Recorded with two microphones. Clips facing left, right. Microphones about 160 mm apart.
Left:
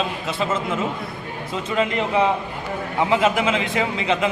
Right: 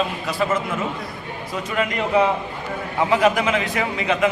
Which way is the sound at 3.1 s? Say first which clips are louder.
Right 1 dB; 20° left (ahead or behind).